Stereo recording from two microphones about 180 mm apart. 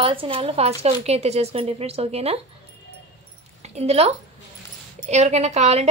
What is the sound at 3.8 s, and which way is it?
Speech, 35° right (ahead or behind).